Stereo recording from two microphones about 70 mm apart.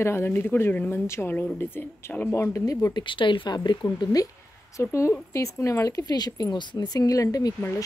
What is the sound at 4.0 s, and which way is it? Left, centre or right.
Speech, left.